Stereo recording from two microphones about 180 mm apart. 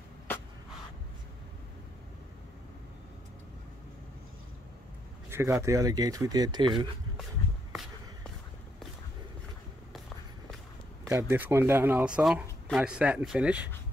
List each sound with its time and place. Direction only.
5.3 s speech: 15° right (ahead or behind)
11.1 s speech: 15° right (ahead or behind)